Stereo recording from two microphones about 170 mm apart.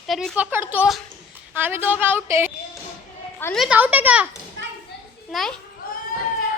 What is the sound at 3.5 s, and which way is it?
Speech, centre (ahead or behind).